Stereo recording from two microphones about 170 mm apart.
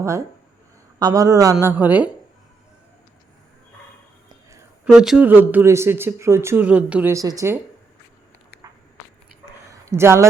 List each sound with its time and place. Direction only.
0.9 s a man's voice: 20° right (ahead or behind)
4.9 s speech: 5° right (ahead or behind)
9.8 s speech: 15° right (ahead or behind)